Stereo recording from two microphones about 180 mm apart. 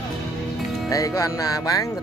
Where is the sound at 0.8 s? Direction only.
20° left (ahead or behind).